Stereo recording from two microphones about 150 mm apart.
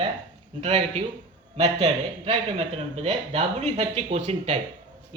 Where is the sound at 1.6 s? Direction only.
45° right (ahead or behind).